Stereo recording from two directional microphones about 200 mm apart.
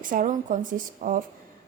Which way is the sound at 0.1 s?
40° right (ahead or behind).